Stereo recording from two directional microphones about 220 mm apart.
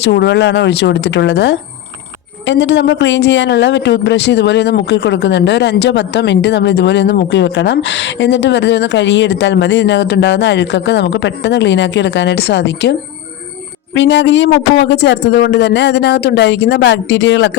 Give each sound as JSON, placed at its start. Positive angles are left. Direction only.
{"t": 0.0, "sound": "speech", "side_deg": 50}
{"t": 13.9, "sound": "speech", "side_deg": 50}